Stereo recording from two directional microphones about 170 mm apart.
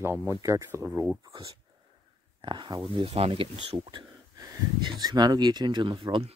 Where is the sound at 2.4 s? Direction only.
25° right (ahead or behind).